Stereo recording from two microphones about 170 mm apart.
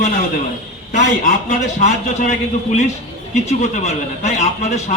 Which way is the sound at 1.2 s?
50° left (ahead or behind).